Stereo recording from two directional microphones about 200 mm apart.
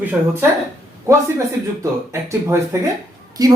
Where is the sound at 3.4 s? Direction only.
20° right (ahead or behind).